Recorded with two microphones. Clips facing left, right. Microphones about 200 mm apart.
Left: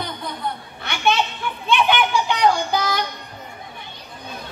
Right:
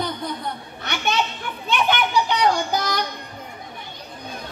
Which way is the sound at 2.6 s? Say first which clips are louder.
Left 1 dB; 45° right (ahead or behind).